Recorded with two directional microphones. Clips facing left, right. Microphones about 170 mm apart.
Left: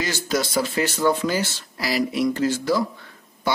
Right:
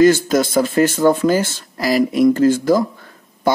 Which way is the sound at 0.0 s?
50° right (ahead or behind).